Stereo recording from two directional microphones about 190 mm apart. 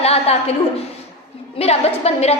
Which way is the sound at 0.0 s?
30° left (ahead or behind).